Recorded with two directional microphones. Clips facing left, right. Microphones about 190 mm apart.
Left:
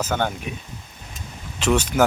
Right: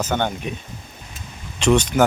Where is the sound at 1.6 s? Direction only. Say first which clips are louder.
Right 3 dB; 5° left (ahead or behind).